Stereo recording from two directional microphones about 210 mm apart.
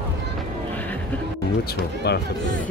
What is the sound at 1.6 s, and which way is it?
Speech, 50° left (ahead or behind).